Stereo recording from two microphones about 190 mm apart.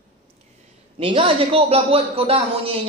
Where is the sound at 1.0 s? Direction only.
25° right (ahead or behind).